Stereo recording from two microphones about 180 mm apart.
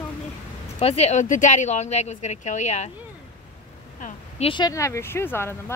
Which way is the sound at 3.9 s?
45° left (ahead or behind).